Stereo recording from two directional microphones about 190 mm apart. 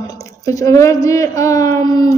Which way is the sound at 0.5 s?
15° left (ahead or behind).